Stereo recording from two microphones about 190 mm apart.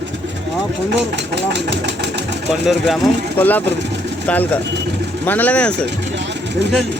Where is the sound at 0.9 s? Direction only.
65° right (ahead or behind).